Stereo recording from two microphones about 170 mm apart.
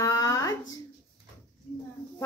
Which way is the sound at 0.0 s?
20° left (ahead or behind).